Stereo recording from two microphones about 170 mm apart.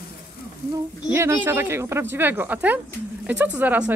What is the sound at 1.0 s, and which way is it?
Speech, 15° right (ahead or behind).